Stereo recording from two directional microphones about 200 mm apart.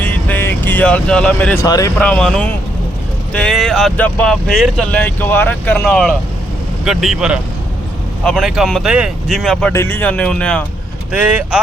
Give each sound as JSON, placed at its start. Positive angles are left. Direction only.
{"t": 0.0, "sound": "vehicle", "side_deg": 10}
{"t": 1.6, "sound": "speech", "side_deg": 20}
{"t": 2.0, "sound": "speech", "side_deg": 5}
{"t": 11.1, "sound": "speech", "side_deg": -5}